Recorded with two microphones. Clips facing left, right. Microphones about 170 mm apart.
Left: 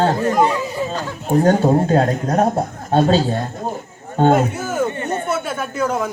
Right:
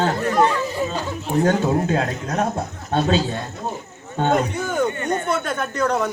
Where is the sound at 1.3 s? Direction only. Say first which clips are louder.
Left 5 dB; 40° left (ahead or behind).